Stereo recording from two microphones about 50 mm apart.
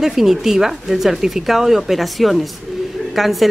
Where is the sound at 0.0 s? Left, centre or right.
Centre.